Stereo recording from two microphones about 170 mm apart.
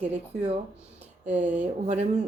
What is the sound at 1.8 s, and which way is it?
Speech, 40° right (ahead or behind).